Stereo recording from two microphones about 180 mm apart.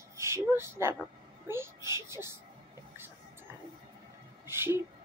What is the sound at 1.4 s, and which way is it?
Bird, 15° right (ahead or behind).